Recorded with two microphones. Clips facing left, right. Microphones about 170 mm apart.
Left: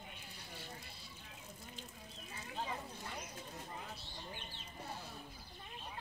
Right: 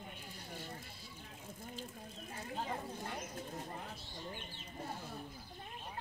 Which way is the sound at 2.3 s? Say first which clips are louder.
Right 2 dB; 50° right (ahead or behind).